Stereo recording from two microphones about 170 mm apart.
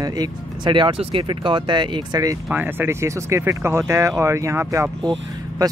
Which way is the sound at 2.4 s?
10° right (ahead or behind).